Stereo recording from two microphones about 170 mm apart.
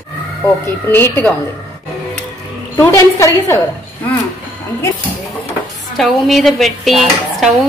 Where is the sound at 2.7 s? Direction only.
15° left (ahead or behind).